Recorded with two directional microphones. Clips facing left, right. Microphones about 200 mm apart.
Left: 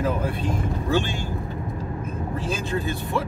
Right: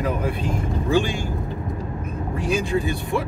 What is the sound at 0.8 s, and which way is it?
Speech, 10° right (ahead or behind).